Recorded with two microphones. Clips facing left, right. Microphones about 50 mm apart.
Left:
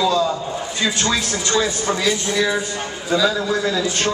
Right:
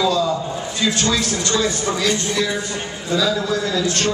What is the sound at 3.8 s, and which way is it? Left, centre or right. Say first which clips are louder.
Speech: right 1 dB; centre.